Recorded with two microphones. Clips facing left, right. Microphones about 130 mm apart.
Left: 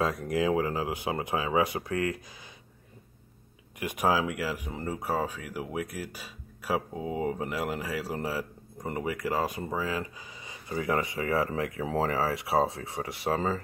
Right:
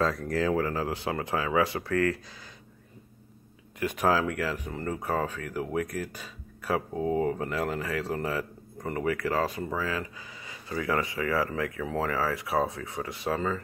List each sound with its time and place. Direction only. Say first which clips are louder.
0.0 s speech: even; 15° left (ahead or behind)
3.8 s speech: right 1 dB; 15° left (ahead or behind); by 13.6 s 30° left (ahead or behind)